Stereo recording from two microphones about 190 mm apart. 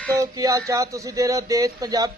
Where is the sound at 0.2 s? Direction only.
15° right (ahead or behind).